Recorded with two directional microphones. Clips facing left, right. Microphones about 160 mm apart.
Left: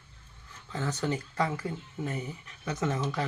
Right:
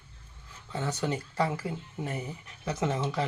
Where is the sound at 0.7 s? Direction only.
10° right (ahead or behind).